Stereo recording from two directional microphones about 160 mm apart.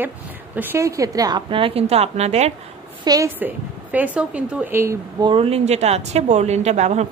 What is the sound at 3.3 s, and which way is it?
Speech, 10° right (ahead or behind).